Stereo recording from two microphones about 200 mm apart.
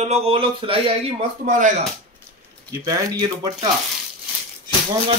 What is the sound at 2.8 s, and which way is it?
Speech, 20° right (ahead or behind).